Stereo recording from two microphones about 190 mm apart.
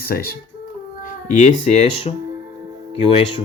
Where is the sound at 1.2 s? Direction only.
40° left (ahead or behind).